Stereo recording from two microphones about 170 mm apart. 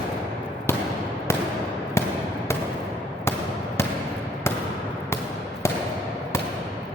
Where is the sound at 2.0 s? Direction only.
15° left (ahead or behind).